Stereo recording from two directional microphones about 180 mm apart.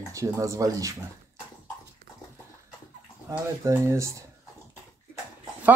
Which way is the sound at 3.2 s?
15° right (ahead or behind).